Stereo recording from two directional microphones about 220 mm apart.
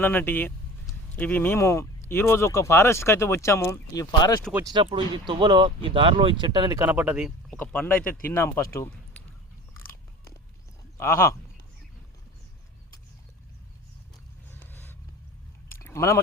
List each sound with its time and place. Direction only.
0.0 s speech: 10° left (ahead or behind)
4.5 s speech: 20° right (ahead or behind)
7.5 s speech: 10° left (ahead or behind)
10.9 s speech: 10° left (ahead or behind)
14.5 s a sound: 10° left (ahead or behind)